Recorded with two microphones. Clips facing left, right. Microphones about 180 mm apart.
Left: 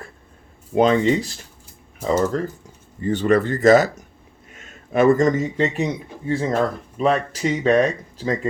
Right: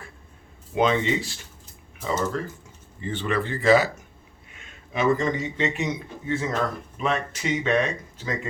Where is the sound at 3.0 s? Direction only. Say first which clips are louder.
Left 9 dB; 40° left (ahead or behind).